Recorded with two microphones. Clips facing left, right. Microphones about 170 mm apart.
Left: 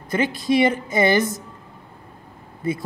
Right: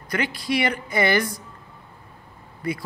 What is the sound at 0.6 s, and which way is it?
Speech, 20° left (ahead or behind).